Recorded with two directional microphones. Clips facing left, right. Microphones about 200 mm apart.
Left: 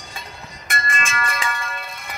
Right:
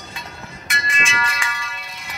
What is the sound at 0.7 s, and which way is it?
Music, 50° left (ahead or behind).